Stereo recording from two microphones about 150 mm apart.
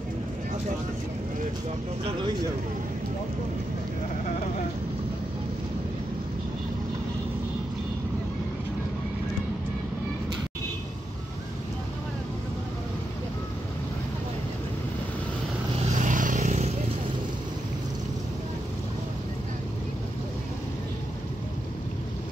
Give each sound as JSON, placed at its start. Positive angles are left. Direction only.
{"t": 15.9, "sound": "vehicle", "side_deg": -55}